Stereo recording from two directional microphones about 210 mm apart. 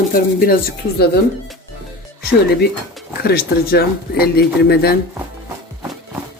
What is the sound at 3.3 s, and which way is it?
Speech, 45° left (ahead or behind).